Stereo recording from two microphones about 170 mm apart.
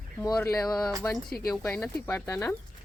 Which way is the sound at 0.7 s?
Centre (ahead or behind).